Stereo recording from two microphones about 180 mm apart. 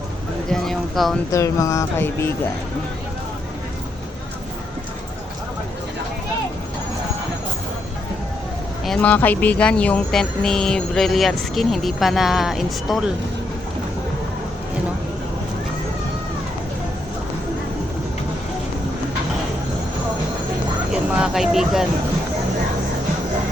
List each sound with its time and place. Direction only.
0.5 s speech: centre (ahead or behind)
1.3 s a sound: 20° left (ahead or behind)
8.8 s speech: 5° left (ahead or behind)
20.9 s vehicle: 5° right (ahead or behind)